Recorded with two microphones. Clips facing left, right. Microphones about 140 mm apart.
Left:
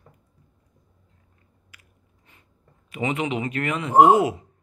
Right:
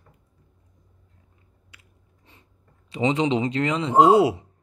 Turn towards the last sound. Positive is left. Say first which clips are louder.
# even
turn(degrees=-20)  # may be behind; listen again after turning